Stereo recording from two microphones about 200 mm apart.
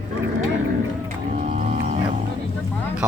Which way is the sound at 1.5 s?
35° right (ahead or behind).